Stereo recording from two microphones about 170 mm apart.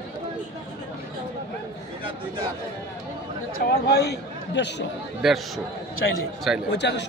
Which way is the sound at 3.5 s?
65° left (ahead or behind).